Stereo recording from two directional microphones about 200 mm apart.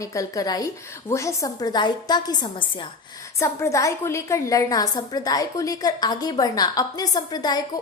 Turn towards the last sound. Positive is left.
turn(degrees=20)  # may be behind; listen again after turning